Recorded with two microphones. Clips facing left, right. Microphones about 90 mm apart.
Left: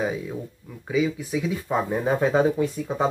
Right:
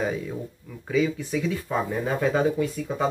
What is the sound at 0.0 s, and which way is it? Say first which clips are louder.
Speech: left 1 dB; 10° left (ahead or behind).